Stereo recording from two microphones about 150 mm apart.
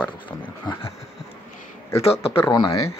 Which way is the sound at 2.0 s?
40° left (ahead or behind).